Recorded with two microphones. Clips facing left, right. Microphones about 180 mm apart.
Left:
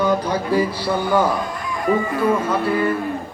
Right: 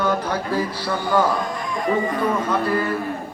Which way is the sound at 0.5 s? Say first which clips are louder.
Left 5 dB; 15° left (ahead or behind).